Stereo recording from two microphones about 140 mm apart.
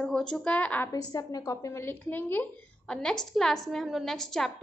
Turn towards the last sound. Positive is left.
turn(degrees=5)  # may be behind; listen again after turning